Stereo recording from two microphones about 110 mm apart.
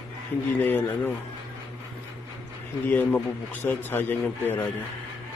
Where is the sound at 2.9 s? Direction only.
15° left (ahead or behind).